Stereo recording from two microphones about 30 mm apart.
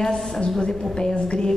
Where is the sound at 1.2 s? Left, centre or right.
Left.